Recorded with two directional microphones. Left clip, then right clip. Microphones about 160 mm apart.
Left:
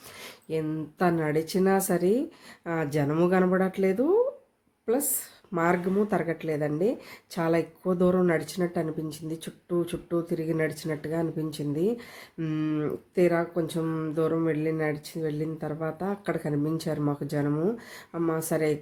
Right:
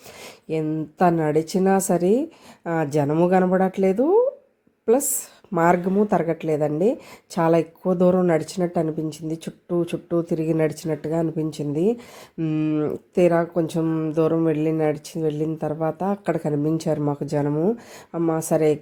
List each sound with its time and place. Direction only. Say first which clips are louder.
0.2 s a sound: right 4 dB; 30° right (ahead or behind)
0.9 s speech: right 7 dB; 30° right (ahead or behind)
4.9 s speech: right 8 dB; 40° right (ahead or behind)